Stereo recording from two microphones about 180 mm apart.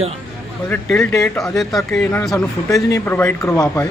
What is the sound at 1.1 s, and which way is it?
Speech, 15° left (ahead or behind).